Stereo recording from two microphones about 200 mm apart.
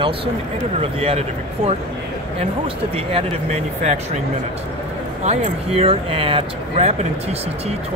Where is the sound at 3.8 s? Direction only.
35° right (ahead or behind).